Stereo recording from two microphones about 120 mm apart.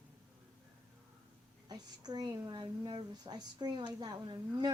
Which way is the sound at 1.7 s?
35° right (ahead or behind).